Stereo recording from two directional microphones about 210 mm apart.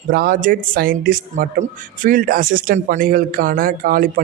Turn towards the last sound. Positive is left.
turn(degrees=-40)  # may be behind; listen again after turning